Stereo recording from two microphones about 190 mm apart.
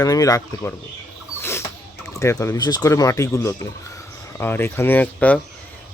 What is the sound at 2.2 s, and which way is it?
Speech, 15° left (ahead or behind).